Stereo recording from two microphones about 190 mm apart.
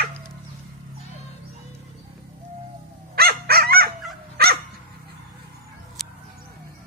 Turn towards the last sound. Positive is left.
turn(degrees=0)  # may be behind; listen again after turning